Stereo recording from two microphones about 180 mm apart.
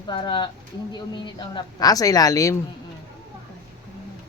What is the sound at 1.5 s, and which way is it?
Speech, 20° left (ahead or behind).